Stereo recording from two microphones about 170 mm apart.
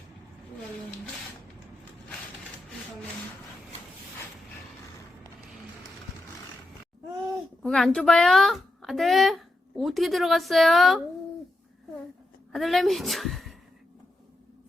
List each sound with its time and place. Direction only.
7.6 s speech: 5° left (ahead or behind)
12.5 s a woman's voice: centre (ahead or behind)